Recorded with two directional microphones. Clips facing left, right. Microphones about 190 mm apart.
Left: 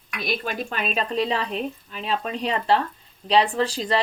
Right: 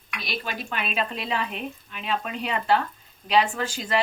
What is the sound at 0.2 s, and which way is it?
Speech, 50° left (ahead or behind).